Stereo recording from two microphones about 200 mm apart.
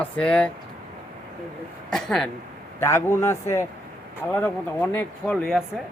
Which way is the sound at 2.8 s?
15° left (ahead or behind).